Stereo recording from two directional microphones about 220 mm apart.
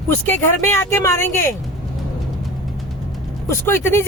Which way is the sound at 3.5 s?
10° left (ahead or behind).